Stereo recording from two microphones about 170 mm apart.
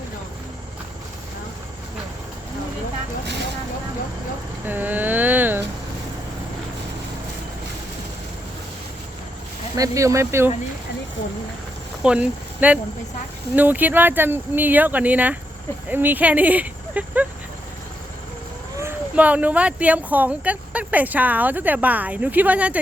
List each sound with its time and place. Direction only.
4.6 s a sound: 10° right (ahead or behind)
9.7 s speech: 20° right (ahead or behind)
12.0 s speech: 5° right (ahead or behind)
18.8 s speech: 10° right (ahead or behind)